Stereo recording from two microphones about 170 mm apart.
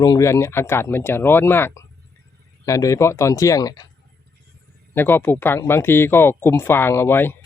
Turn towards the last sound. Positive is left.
turn(degrees=15)  # may be behind; listen again after turning